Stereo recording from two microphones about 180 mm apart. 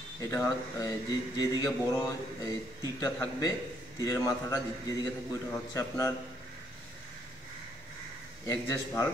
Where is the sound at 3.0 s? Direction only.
15° left (ahead or behind).